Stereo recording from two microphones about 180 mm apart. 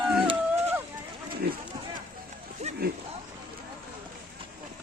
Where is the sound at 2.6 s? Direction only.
35° right (ahead or behind).